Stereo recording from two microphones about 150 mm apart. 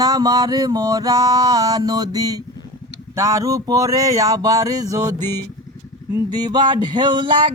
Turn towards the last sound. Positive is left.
turn(degrees=-30)  # may be behind; listen again after turning